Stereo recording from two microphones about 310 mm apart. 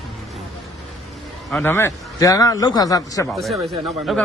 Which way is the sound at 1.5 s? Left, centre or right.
Centre.